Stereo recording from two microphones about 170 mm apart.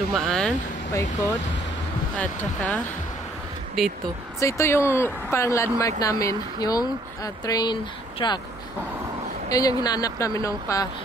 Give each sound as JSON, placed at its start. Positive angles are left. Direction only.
{"t": 0.1, "sound": "speech", "side_deg": 0}
{"t": 2.1, "sound": "speech", "side_deg": 10}
{"t": 4.4, "sound": "speech", "side_deg": 15}
{"t": 9.5, "sound": "speech", "side_deg": 20}